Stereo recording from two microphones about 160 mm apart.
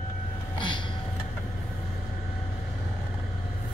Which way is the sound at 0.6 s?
30° left (ahead or behind).